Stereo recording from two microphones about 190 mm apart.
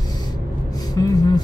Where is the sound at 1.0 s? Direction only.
20° left (ahead or behind).